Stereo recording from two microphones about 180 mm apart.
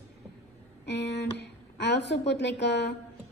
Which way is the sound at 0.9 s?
70° left (ahead or behind).